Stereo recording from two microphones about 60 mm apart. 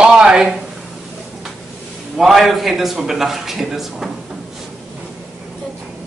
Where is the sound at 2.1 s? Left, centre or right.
Centre.